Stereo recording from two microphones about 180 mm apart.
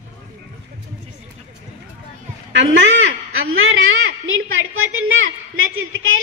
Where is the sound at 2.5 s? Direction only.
90° right.